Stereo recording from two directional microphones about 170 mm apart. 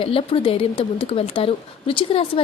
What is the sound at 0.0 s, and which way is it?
Speech, 35° left (ahead or behind).